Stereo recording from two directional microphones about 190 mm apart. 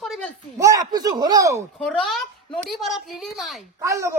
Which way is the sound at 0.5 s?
15° right (ahead or behind).